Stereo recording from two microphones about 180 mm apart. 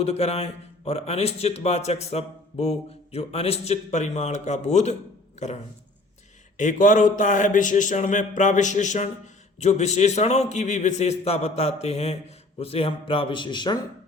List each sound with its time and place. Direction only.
0.0 s speech: 35° left (ahead or behind)
6.6 s speech: 45° left (ahead or behind); by 13.7 s 25° left (ahead or behind)